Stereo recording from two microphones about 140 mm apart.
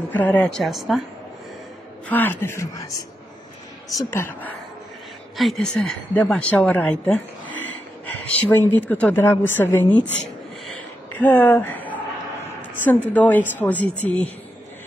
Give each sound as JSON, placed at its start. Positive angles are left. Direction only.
{"t": 0.1, "sound": "speech", "side_deg": 10}
{"t": 2.0, "sound": "a woman's voice", "side_deg": 15}
{"t": 5.4, "sound": "a woman's voice", "side_deg": 5}
{"t": 10.7, "sound": "a sound", "side_deg": 15}
{"t": 12.8, "sound": "a woman's voice", "side_deg": 10}